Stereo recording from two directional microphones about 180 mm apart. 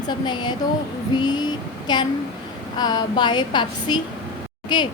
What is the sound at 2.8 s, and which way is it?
A woman's voice, 25° left (ahead or behind).